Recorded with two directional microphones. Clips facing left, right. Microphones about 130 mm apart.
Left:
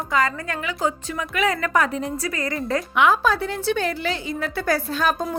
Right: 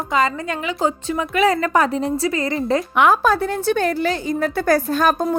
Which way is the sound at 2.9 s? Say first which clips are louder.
Right 2 dB; 50° right (ahead or behind).